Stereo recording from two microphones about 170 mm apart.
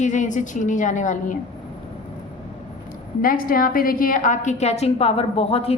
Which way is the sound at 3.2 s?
55° left (ahead or behind).